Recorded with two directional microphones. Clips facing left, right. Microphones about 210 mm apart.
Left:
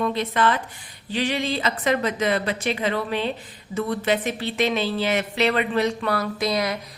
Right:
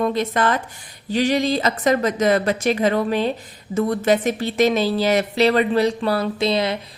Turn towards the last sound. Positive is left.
turn(degrees=-25)  # may be behind; listen again after turning